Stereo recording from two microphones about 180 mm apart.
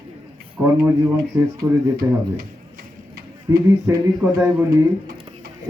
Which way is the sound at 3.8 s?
10° right (ahead or behind).